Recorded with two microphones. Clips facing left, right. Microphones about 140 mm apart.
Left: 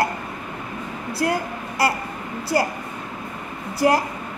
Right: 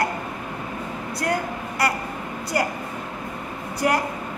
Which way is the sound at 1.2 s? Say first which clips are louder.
Left 2 dB; 20° left (ahead or behind).